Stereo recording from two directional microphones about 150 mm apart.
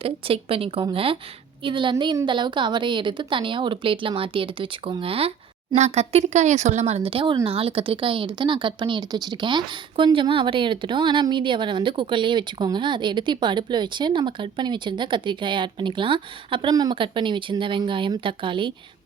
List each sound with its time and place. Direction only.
0.0 s a woman's voice: 40° right (ahead or behind)